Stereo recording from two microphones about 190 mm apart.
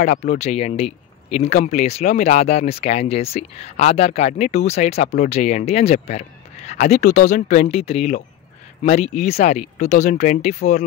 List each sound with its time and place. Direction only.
0.0 s speech: 40° left (ahead or behind)